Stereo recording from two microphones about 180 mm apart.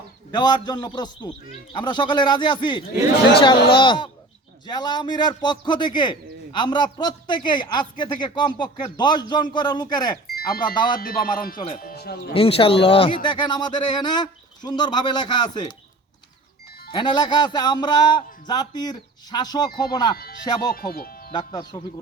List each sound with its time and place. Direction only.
0.3 s a man's voice: 25° left (ahead or behind)
10.2 s sheep: 55° left (ahead or behind)
10.9 s music: 55° left (ahead or behind)
11.7 s speech: 55° left (ahead or behind)
12.3 s a man's voice: 30° left (ahead or behind)
16.9 s a man's voice: 25° left (ahead or behind)
20.7 s speech: 55° left (ahead or behind)
21.3 s a man's voice: 20° left (ahead or behind)